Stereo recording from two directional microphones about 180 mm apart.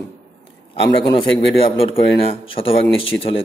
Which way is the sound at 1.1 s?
30° left (ahead or behind).